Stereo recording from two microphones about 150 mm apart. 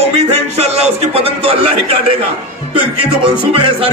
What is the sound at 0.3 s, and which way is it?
A man's voice, 45° right (ahead or behind).